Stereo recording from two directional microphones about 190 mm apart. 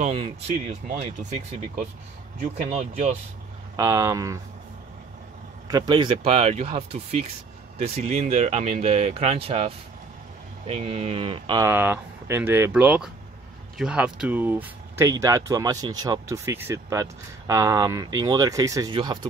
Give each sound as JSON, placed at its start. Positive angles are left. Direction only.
{"t": 0.0, "sound": "speech", "side_deg": -35}
{"t": 2.4, "sound": "speech", "side_deg": -45}
{"t": 3.7, "sound": "speech", "side_deg": -15}
{"t": 5.7, "sound": "speech", "side_deg": -20}
{"t": 10.7, "sound": "speech", "side_deg": -30}
{"t": 11.6, "sound": "speech", "side_deg": -10}